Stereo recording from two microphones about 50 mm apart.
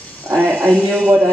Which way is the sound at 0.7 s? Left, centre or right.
Right.